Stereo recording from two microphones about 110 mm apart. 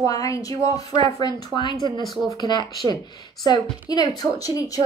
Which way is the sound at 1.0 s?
45° left (ahead or behind).